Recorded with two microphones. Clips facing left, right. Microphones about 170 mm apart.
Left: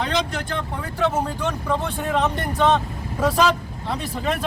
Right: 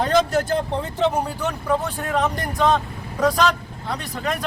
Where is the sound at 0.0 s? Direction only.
45° right (ahead or behind).